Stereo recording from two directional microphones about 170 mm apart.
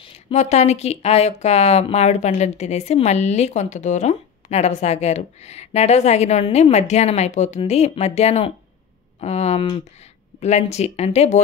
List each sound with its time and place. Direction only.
0.0 s speech: 40° left (ahead or behind)